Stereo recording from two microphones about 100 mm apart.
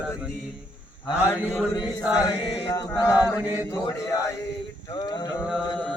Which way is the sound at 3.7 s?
40° left (ahead or behind).